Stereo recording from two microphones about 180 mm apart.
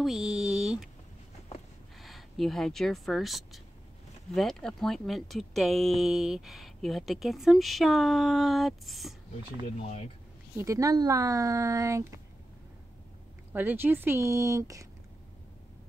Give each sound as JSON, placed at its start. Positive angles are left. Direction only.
{"t": 0.0, "sound": "speech", "side_deg": 0}
{"t": 2.0, "sound": "speech", "side_deg": 0}
{"t": 10.6, "sound": "speech", "side_deg": -20}
{"t": 13.5, "sound": "speech", "side_deg": -10}